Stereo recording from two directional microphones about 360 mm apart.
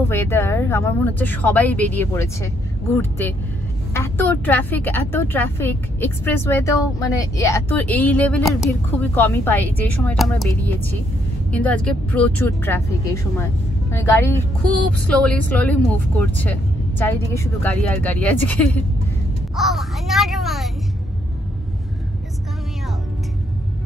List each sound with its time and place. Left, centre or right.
0.0 s a woman's voice: centre